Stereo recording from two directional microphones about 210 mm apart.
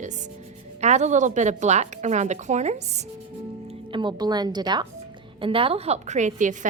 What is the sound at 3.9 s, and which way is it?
A woman's voice, 20° right (ahead or behind).